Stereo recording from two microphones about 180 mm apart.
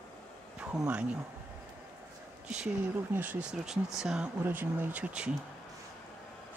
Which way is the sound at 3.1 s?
10° right (ahead or behind).